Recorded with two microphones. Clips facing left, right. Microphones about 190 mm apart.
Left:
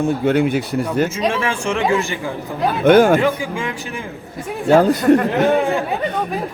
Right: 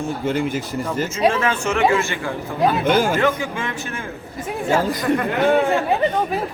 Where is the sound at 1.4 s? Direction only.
10° left (ahead or behind).